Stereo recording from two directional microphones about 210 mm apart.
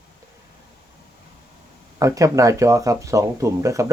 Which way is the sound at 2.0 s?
15° right (ahead or behind).